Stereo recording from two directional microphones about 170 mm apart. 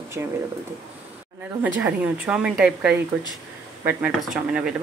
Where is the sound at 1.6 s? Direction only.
10° right (ahead or behind).